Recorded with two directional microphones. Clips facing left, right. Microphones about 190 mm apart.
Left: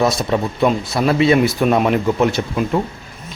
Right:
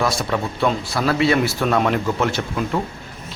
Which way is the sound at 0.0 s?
20° left (ahead or behind).